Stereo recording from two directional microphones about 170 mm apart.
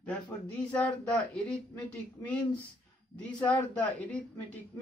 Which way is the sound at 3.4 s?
10° left (ahead or behind).